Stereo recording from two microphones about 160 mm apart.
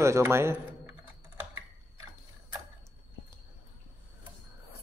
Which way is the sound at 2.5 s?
15° right (ahead or behind).